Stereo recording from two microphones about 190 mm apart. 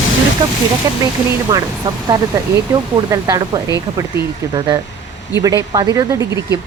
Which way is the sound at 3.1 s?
20° right (ahead or behind).